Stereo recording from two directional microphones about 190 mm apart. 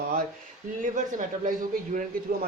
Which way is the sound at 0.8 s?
45° right (ahead or behind).